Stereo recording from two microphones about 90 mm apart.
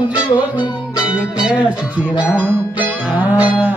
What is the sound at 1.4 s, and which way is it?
Cattle, 10° right (ahead or behind).